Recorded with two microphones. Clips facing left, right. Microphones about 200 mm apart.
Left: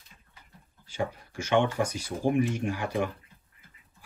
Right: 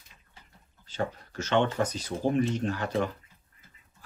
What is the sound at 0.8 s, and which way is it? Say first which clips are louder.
Speech: even; 10° left (ahead or behind).